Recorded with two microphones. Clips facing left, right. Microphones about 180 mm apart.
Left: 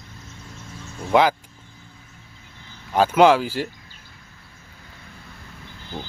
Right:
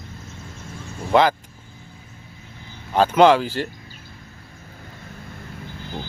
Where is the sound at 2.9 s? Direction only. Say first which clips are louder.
Right 1 dB; 10° left (ahead or behind).